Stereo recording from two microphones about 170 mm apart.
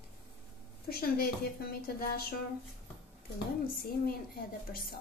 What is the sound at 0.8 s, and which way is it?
A woman's voice, 65° left (ahead or behind).